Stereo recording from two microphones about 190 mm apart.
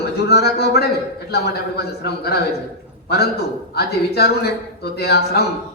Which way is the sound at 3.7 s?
55° left (ahead or behind).